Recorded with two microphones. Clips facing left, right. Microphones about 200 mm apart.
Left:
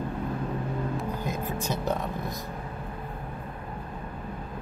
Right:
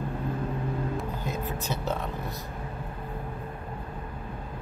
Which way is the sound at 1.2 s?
15° left (ahead or behind).